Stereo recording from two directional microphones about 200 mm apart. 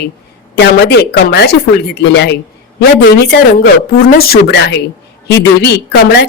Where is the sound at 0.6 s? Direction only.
55° left (ahead or behind).